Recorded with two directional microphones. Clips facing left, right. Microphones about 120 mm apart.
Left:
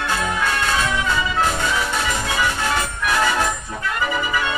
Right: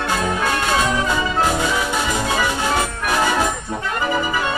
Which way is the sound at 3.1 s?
25° right (ahead or behind).